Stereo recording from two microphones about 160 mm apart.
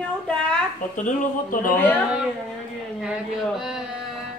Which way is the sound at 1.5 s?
55° left (ahead or behind).